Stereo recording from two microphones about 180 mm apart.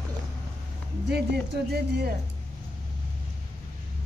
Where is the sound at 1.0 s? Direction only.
60° right (ahead or behind).